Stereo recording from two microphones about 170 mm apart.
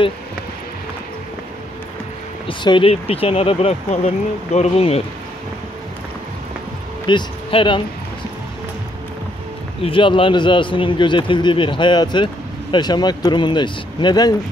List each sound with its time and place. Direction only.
2.4 s speech: 30° left (ahead or behind)
7.1 s speech: 30° left (ahead or behind)
9.8 s speech: 30° left (ahead or behind)